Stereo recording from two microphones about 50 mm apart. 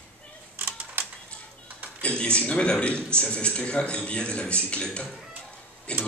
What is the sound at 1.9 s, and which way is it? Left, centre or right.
A man's voice, left.